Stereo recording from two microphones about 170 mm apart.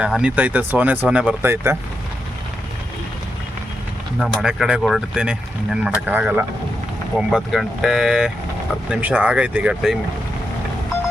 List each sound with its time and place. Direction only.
0.0 s speech: 5° right (ahead or behind)
4.2 s speech: centre (ahead or behind)